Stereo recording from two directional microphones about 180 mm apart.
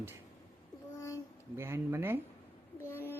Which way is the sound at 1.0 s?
15° left (ahead or behind).